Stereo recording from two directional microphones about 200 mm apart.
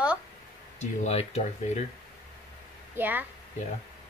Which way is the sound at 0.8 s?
35° left (ahead or behind).